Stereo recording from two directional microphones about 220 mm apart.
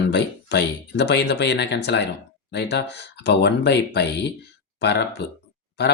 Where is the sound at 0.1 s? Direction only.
50° left (ahead or behind).